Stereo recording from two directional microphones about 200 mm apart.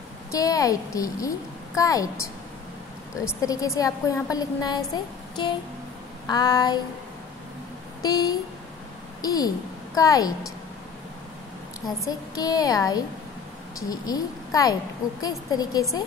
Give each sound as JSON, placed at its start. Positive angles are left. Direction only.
{"t": 0.3, "sound": "a woman's voice", "side_deg": 15}
{"t": 3.3, "sound": "a woman's voice", "side_deg": 15}
{"t": 8.0, "sound": "a woman's voice", "side_deg": 20}
{"t": 12.1, "sound": "a woman's voice", "side_deg": 20}